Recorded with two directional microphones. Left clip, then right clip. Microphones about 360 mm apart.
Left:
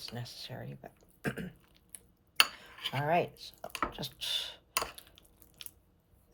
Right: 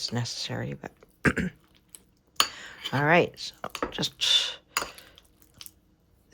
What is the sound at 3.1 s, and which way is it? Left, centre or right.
Speech, centre.